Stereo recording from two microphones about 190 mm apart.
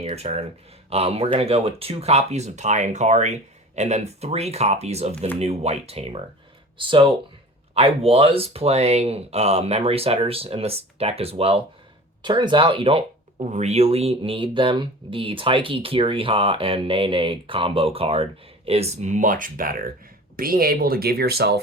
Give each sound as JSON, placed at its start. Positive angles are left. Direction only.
{"t": 0.0, "sound": "speech", "side_deg": -35}